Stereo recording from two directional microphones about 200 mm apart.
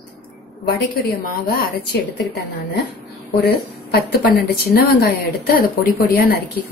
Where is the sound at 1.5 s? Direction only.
55° left (ahead or behind).